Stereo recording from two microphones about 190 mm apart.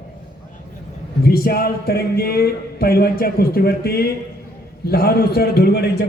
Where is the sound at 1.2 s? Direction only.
50° left (ahead or behind).